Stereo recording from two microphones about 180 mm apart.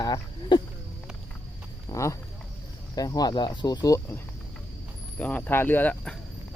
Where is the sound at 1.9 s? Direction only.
15° left (ahead or behind).